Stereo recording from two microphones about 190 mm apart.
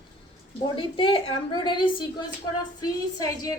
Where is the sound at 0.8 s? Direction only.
25° left (ahead or behind).